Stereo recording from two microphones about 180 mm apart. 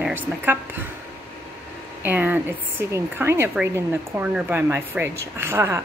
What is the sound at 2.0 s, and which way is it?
A woman's voice, 10° right (ahead or behind).